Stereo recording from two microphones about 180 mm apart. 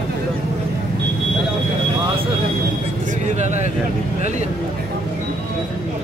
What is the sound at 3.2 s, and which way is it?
Speech, 40° right (ahead or behind).